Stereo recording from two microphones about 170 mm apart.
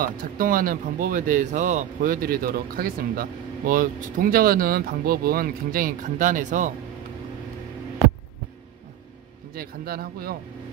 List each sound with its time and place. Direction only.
0.0 s speech: 55° right (ahead or behind)
9.5 s speech: 60° right (ahead or behind)